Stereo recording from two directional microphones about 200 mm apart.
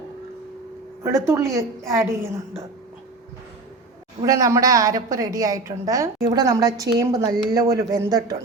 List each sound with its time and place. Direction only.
1.3 s a woman's voice: 15° right (ahead or behind)
4.2 s a woman's voice: 15° right (ahead or behind)